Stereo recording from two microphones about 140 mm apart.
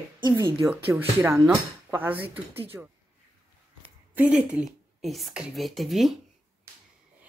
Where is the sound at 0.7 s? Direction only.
15° right (ahead or behind).